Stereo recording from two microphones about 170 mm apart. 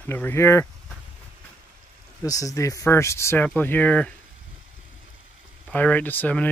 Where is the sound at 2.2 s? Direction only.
20° left (ahead or behind).